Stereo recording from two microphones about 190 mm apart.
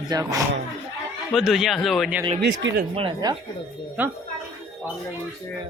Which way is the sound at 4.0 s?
10° right (ahead or behind).